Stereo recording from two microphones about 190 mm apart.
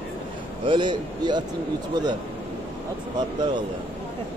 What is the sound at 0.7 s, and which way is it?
Speech, 25° right (ahead or behind).